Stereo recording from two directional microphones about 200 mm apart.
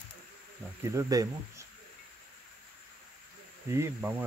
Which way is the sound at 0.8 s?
15° right (ahead or behind).